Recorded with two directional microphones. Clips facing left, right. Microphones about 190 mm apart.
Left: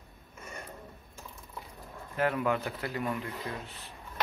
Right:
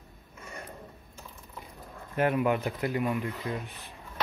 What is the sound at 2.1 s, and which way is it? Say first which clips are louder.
Speech: right 3 dB; 20° right (ahead or behind).